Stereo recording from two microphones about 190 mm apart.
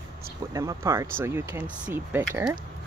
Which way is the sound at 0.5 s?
15° right (ahead or behind).